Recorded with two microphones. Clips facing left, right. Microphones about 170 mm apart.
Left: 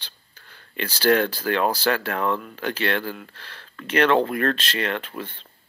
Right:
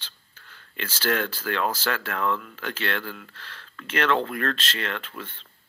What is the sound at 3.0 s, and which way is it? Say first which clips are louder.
Speech: left 5 dB; 35° left (ahead or behind).